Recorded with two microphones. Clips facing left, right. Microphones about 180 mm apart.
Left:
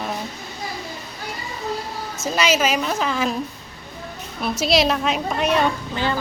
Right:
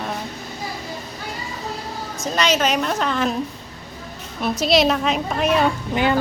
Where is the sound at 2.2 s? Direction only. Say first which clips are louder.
Even; 5° left (ahead or behind).